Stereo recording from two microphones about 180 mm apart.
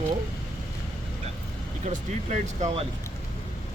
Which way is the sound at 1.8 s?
40° right (ahead or behind).